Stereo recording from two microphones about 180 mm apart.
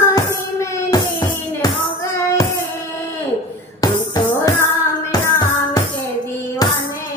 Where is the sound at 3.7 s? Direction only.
20° left (ahead or behind).